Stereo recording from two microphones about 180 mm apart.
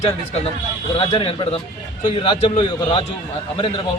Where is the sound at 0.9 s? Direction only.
30° left (ahead or behind).